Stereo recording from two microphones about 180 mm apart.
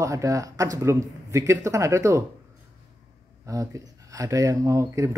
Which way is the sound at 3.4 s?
20° right (ahead or behind).